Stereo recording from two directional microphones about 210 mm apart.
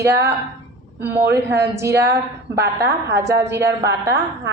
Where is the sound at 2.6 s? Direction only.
15° right (ahead or behind).